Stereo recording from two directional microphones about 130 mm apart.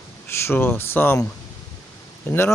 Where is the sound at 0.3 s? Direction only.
20° left (ahead or behind).